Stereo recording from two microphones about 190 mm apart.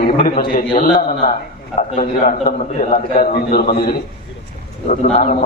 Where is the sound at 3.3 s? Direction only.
55° left (ahead or behind).